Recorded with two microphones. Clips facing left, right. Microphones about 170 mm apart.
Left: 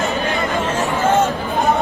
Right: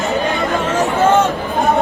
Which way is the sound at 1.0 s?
85° right.